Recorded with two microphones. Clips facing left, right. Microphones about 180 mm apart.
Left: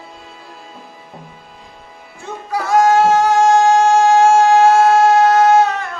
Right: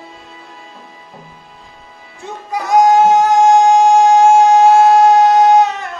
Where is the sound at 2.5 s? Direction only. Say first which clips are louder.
Right 2 dB; 20° right (ahead or behind).